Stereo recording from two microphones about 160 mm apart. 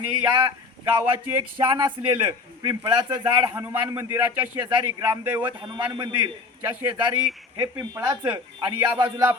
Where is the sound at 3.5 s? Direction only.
15° right (ahead or behind).